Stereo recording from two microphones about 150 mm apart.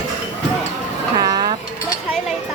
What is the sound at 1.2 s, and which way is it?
Dishes, 25° right (ahead or behind).